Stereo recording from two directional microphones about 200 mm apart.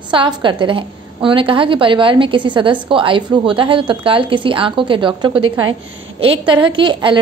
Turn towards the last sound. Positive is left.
turn(degrees=-25)  # may be behind; listen again after turning